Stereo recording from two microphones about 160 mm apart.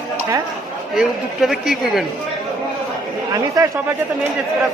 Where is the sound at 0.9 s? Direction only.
Centre (ahead or behind).